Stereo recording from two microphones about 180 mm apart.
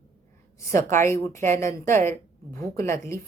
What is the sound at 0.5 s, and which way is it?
A woman's voice, 15° left (ahead or behind).